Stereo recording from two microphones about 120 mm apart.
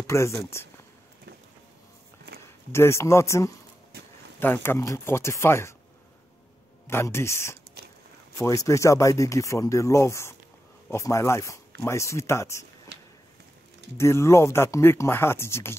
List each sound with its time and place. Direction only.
0.0 s speech: 25° left (ahead or behind)
2.7 s speech: 20° left (ahead or behind)
6.9 s speech: 20° left (ahead or behind)
13.9 s speech: 25° left (ahead or behind)